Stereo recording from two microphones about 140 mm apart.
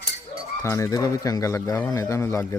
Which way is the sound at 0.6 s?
20° left (ahead or behind).